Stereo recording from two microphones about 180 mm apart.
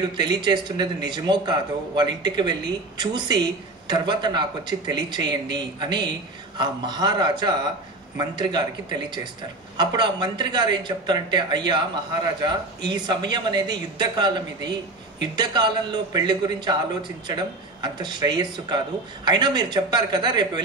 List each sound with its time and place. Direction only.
0.0 s speech: 25° right (ahead or behind)